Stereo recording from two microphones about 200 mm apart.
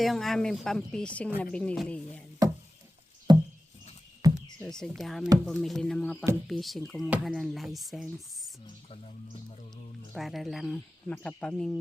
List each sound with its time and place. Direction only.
0.0 s speech: centre (ahead or behind)
3.3 s a sound: 20° right (ahead or behind)
4.6 s speech: 5° left (ahead or behind)
10.2 s speech: centre (ahead or behind)